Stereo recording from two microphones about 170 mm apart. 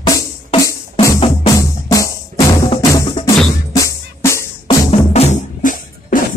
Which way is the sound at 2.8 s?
20° left (ahead or behind).